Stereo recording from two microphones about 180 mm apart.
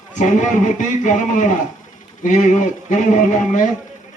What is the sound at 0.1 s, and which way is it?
A man's voice, 45° left (ahead or behind).